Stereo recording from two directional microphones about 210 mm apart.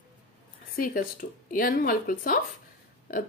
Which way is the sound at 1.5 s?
40° left (ahead or behind).